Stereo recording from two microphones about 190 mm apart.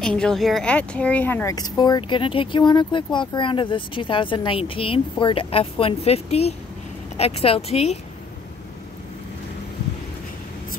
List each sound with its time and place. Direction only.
0.0 s speech: 5° left (ahead or behind); by 8.0 s 35° left (ahead or behind)